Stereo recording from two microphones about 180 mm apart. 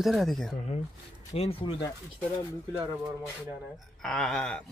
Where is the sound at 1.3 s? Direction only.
35° left (ahead or behind).